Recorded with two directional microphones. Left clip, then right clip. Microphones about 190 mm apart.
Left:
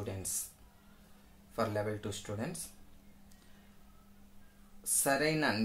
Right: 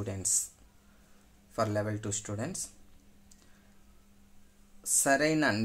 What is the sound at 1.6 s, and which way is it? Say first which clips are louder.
Speech: right 3 dB; 30° right (ahead or behind).